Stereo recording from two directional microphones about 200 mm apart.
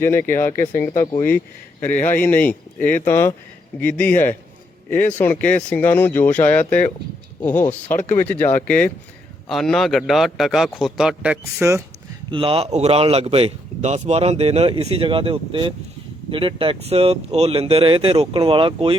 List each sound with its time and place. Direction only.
0.0 s a man's voice: 10° left (ahead or behind); by 11.8 s 10° right (ahead or behind)
12.3 s a man's voice: 25° right (ahead or behind)